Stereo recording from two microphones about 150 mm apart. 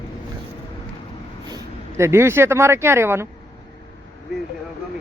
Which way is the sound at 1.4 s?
20° right (ahead or behind).